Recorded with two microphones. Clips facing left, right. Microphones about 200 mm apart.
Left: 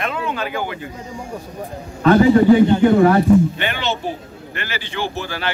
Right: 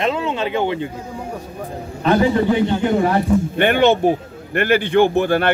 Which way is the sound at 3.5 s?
55° right (ahead or behind).